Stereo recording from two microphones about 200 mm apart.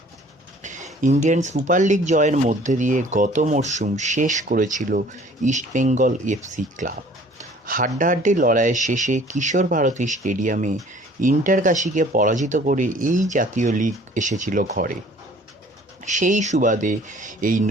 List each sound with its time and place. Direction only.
0.6 s a sound: 40° right (ahead or behind)
1.0 s speech: 35° right (ahead or behind)
16.0 s speech: 40° right (ahead or behind)